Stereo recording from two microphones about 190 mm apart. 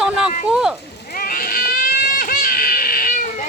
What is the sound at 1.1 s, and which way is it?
Baby cry, 50° left (ahead or behind).